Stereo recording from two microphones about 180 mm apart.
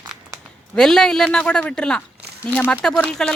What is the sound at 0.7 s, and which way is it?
Speech, 5° left (ahead or behind).